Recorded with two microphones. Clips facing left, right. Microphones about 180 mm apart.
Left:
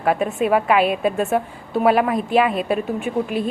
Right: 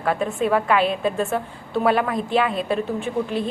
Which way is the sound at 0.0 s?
10° left (ahead or behind).